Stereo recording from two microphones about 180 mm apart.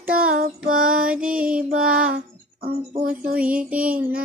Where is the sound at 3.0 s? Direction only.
50° right (ahead or behind).